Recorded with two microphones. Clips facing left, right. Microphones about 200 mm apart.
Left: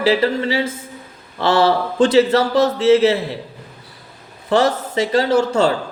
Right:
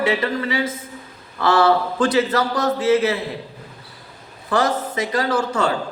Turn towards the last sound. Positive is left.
turn(degrees=30)  # may be behind; listen again after turning